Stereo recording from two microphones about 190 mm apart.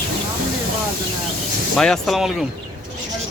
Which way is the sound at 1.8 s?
Centre (ahead or behind).